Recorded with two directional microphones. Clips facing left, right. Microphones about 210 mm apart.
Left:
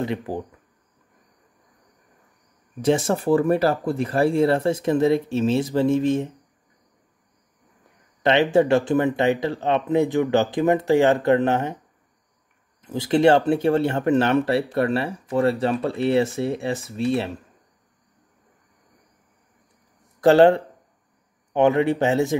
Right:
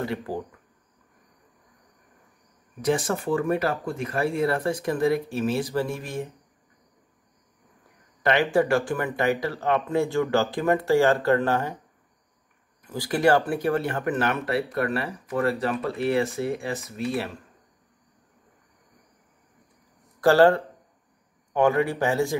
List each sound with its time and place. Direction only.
0.0 s speech: 20° left (ahead or behind)
2.8 s speech: 25° left (ahead or behind)
8.2 s speech: 20° left (ahead or behind)
12.8 s speech: 25° left (ahead or behind)
20.2 s speech: 20° left (ahead or behind)